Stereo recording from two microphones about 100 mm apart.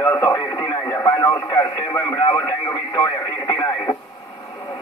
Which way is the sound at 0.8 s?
35° left (ahead or behind).